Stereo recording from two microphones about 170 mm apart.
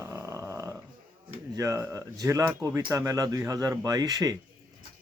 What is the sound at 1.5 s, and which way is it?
Speech, 20° right (ahead or behind).